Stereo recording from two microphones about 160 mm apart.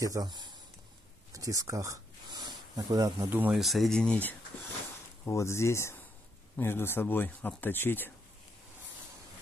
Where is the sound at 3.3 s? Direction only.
10° right (ahead or behind).